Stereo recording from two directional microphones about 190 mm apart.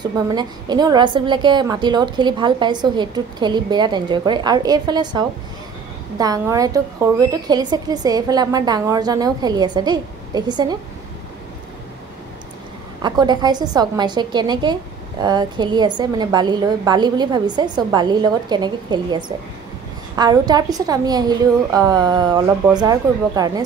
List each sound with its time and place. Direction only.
0.3 s a woman's voice: 20° right (ahead or behind)
13.0 s a woman's voice: 20° right (ahead or behind)